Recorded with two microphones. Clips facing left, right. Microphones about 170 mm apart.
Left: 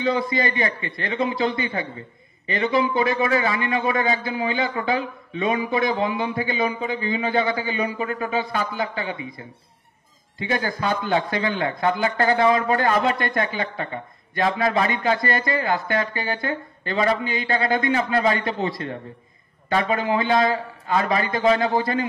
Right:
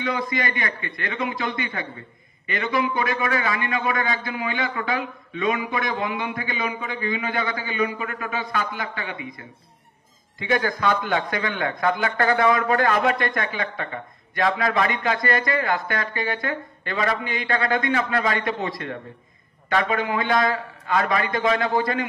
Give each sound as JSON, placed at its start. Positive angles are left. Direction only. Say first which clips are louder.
{"t": 0.0, "sound": "a man's voice", "louder": "left 4 dB", "side_deg": 30}